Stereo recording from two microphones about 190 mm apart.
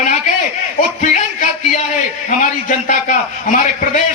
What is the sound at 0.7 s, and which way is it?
A man's voice, 45° left (ahead or behind).